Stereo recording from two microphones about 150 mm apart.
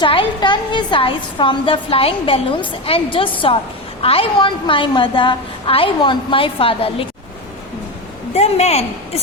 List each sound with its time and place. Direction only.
0.0 s a woman's voice: 35° left (ahead or behind)
8.3 s a woman's voice: 45° left (ahead or behind)